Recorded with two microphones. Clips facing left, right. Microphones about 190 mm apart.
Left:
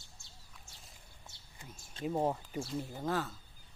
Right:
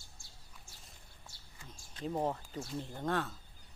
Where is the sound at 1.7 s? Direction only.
25° left (ahead or behind).